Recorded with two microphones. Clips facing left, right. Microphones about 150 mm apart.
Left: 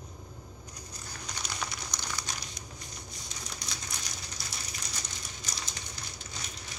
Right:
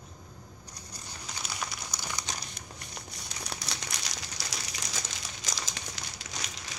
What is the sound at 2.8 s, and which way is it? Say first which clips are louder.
Crumpling: right 1 dB; 70° right (ahead or behind).